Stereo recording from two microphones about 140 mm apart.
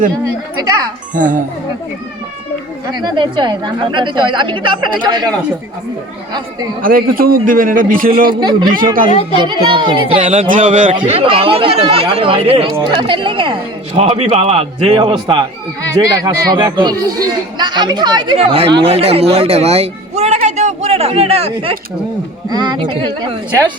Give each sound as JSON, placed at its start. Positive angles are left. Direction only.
{"t": 1.1, "sound": "a man's voice", "side_deg": -70}
{"t": 2.8, "sound": "a woman's voice", "side_deg": -30}
{"t": 6.8, "sound": "a man's voice", "side_deg": -90}
{"t": 8.3, "sound": "a woman's voice", "side_deg": -35}
{"t": 10.5, "sound": "a man's voice", "side_deg": -65}
{"t": 10.9, "sound": "a woman's voice", "side_deg": -40}
{"t": 18.3, "sound": "a man's voice", "side_deg": -45}
{"t": 22.4, "sound": "a woman's voice", "side_deg": -30}